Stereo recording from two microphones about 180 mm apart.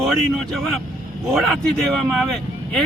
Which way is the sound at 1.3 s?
Centre (ahead or behind).